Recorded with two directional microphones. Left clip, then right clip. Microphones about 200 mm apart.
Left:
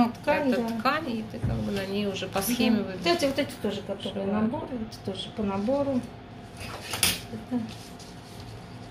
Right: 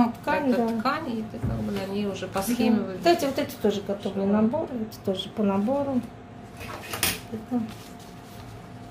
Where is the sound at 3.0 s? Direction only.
45° right (ahead or behind).